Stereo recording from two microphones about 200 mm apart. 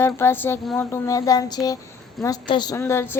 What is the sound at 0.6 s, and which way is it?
Speech, centre (ahead or behind).